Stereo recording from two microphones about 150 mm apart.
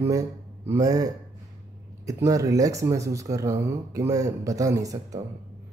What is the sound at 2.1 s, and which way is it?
Speech, 20° right (ahead or behind).